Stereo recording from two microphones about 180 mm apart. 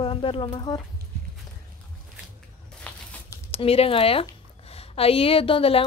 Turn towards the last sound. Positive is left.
turn(degrees=30)  # may be behind; listen again after turning